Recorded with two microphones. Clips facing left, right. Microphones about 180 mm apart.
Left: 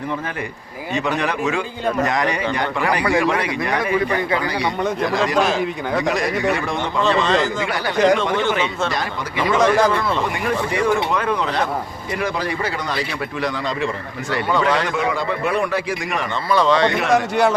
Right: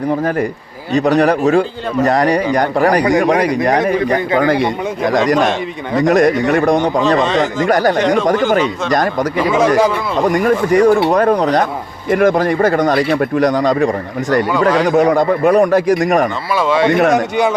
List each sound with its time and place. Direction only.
0.9 s speech: 40° right (ahead or behind)
4.4 s speech: 50° right (ahead or behind)
5.4 s speech: centre (ahead or behind)
6.0 s speech: 50° right (ahead or behind)
7.9 s speech: centre (ahead or behind)
8.2 s speech: 40° right (ahead or behind)
9.4 s speech: 5° right (ahead or behind)
10.2 s speech: 40° right (ahead or behind)
16.6 s speech: 5° right (ahead or behind)